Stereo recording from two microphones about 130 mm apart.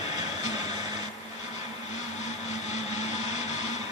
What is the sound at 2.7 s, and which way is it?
Vehicle, 60° left (ahead or behind).